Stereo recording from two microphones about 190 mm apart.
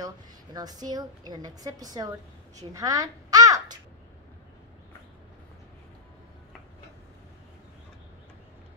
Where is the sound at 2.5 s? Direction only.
20° right (ahead or behind).